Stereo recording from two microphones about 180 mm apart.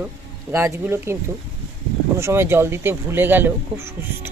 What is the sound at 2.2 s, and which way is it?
Speech, 15° right (ahead or behind).